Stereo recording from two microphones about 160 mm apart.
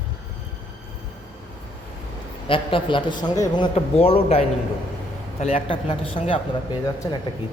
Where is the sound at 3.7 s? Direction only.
40° left (ahead or behind).